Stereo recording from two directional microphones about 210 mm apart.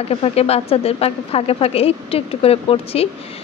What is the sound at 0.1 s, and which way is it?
A woman's voice, 30° left (ahead or behind).